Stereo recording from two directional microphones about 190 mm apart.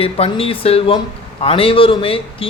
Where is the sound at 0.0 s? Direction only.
30° left (ahead or behind).